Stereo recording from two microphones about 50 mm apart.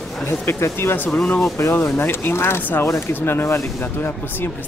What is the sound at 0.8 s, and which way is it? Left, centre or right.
Speech, left.